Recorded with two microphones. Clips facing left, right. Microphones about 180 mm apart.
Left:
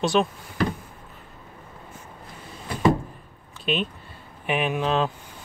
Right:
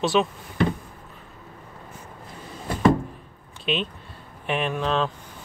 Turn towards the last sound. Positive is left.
turn(degrees=5)  # may be behind; listen again after turning